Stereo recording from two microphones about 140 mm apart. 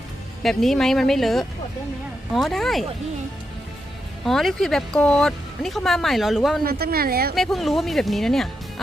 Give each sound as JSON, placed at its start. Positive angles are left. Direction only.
{"t": 0.4, "sound": "speech", "side_deg": 0}
{"t": 4.2, "sound": "speech", "side_deg": 0}
{"t": 6.7, "sound": "speech", "side_deg": -90}
{"t": 7.3, "sound": "speech", "side_deg": 0}